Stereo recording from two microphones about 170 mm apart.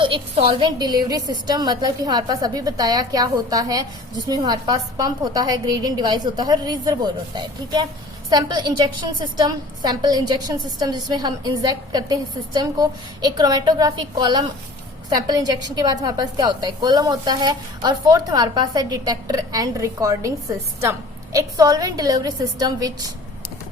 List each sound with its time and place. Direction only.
0.0 s a woman's voice: 30° right (ahead or behind)